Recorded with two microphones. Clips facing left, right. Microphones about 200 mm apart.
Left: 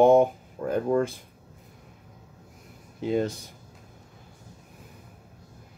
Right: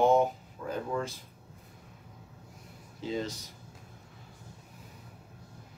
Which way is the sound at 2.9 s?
55° left (ahead or behind).